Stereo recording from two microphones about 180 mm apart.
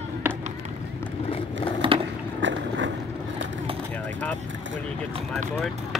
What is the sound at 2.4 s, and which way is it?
Vehicle, 90° right.